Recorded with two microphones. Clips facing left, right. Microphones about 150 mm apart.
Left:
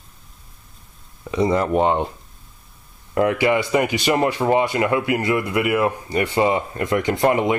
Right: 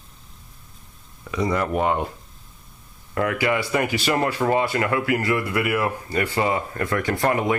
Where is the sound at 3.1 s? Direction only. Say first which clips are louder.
Left 4 dB; 25° left (ahead or behind).